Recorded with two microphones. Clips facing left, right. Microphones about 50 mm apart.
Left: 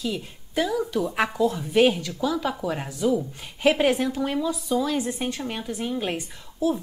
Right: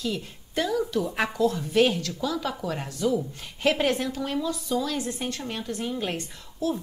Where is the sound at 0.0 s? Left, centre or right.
Centre.